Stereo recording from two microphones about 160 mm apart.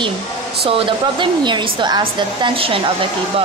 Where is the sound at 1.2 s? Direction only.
30° right (ahead or behind).